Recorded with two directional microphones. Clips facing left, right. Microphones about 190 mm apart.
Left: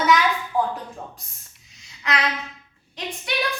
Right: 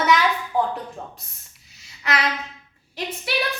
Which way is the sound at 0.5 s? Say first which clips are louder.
Right 1 dB; 25° right (ahead or behind).